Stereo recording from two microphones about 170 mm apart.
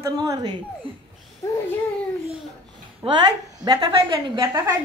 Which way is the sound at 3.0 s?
30° right (ahead or behind).